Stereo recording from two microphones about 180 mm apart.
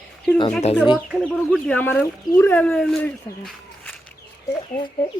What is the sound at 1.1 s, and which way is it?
Speech, centre (ahead or behind).